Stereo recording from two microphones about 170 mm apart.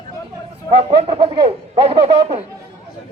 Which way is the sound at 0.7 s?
35° right (ahead or behind).